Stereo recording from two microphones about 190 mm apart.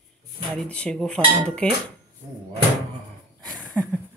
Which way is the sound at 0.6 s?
5° left (ahead or behind).